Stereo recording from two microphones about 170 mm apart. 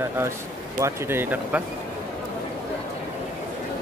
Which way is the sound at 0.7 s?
15° right (ahead or behind).